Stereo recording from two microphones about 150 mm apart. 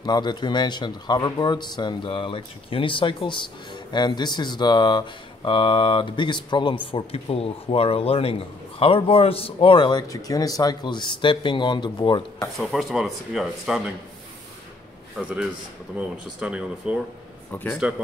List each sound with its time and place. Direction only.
0.0 s a man's voice: 30° left (ahead or behind)
12.5 s speech: centre (ahead or behind)
15.1 s speech: 5° right (ahead or behind)